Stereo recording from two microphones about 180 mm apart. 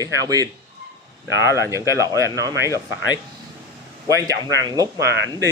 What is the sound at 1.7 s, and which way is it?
Speech, 15° right (ahead or behind).